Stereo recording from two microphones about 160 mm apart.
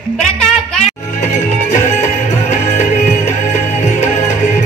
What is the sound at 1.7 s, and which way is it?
Music, 45° left (ahead or behind).